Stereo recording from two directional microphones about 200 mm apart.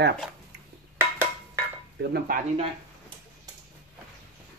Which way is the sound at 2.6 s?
25° right (ahead or behind).